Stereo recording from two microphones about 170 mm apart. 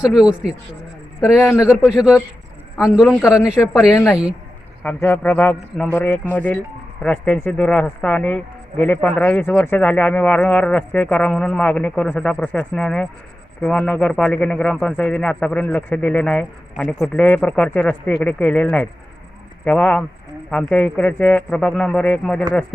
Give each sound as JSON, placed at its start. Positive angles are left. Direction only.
{"t": 0.0, "sound": "a man's voice", "side_deg": -5}
{"t": 3.1, "sound": "a man's voice", "side_deg": 15}
{"t": 3.3, "sound": "a man's voice", "side_deg": -5}
{"t": 4.8, "sound": "a man's voice", "side_deg": 10}